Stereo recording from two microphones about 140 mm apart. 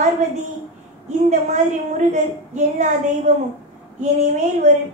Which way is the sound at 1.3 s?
55° right (ahead or behind).